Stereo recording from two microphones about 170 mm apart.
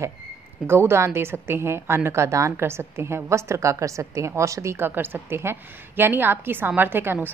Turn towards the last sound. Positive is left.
turn(degrees=-10)  # may be behind; listen again after turning